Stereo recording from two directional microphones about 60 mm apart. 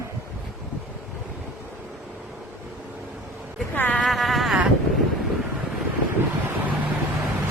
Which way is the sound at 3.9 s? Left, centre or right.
Centre.